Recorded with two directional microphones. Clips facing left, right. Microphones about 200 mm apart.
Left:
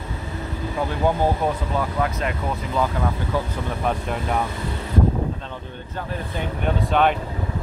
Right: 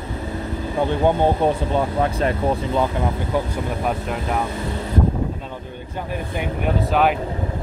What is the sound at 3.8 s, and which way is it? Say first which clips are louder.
Speech: left 2 dB; centre (ahead or behind).